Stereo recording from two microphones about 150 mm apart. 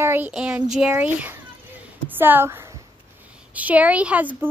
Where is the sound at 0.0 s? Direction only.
15° right (ahead or behind).